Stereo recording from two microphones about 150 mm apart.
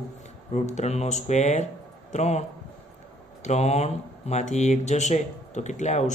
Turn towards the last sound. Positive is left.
turn(degrees=50)  # may be behind; listen again after turning